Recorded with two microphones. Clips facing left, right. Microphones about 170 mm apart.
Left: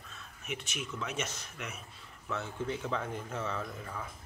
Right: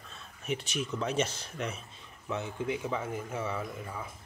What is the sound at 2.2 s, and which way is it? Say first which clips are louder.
Speech: right 3 dB; 15° right (ahead or behind).